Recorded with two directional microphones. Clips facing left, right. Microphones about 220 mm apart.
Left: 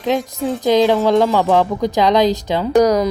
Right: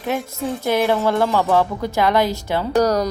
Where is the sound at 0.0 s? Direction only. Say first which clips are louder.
Left 5 dB; 15° left (ahead or behind).